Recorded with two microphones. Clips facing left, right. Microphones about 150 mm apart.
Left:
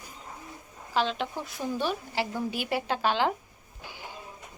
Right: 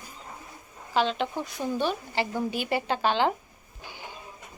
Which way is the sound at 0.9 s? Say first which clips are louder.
Right 2 dB; centre (ahead or behind).